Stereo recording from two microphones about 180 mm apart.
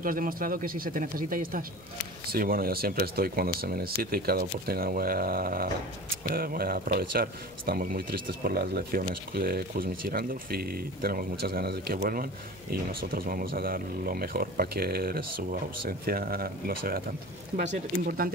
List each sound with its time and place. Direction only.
0.0 s speech: 50° right (ahead or behind)